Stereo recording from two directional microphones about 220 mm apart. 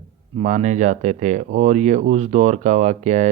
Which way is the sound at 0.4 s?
35° right (ahead or behind).